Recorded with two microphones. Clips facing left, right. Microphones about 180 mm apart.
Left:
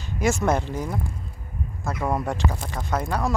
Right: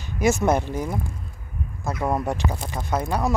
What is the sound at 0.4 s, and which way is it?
Speech, 15° right (ahead or behind).